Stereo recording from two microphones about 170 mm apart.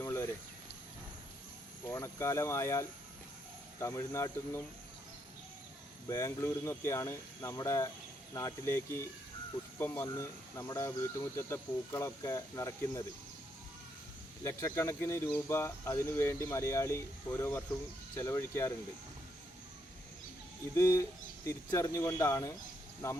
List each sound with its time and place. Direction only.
0.0 s a sound: 15° left (ahead or behind)
1.9 s speech: 15° left (ahead or behind)
6.1 s speech: 20° left (ahead or behind)
14.4 s speech: 15° left (ahead or behind)
20.7 s speech: 15° left (ahead or behind)